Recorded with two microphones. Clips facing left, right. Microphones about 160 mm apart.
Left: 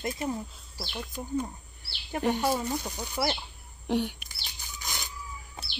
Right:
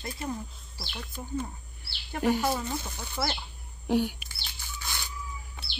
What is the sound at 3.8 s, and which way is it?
Speech, 5° right (ahead or behind).